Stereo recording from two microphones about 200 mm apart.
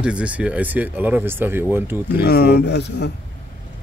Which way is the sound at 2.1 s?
50° left (ahead or behind).